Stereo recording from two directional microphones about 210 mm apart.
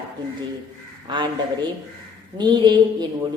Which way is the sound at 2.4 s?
20° right (ahead or behind).